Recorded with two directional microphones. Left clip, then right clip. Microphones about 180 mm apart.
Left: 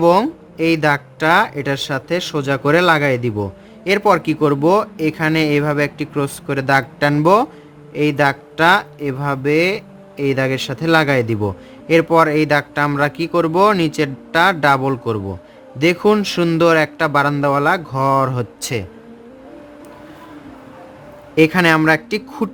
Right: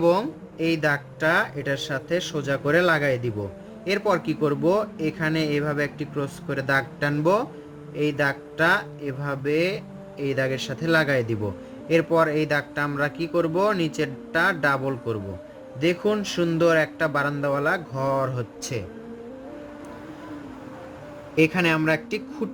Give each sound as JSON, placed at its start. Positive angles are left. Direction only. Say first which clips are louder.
{"t": 0.0, "sound": "speech", "louder": "left 8 dB", "side_deg": 55}
{"t": 11.9, "sound": "speech", "louder": "left 8 dB", "side_deg": 60}
{"t": 21.3, "sound": "speech", "louder": "left 8 dB", "side_deg": 35}